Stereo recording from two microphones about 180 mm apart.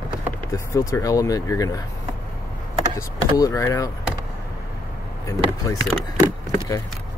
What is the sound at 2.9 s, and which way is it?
Speech, 15° left (ahead or behind).